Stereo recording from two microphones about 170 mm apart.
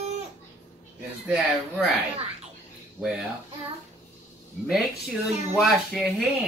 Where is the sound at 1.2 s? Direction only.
Centre (ahead or behind).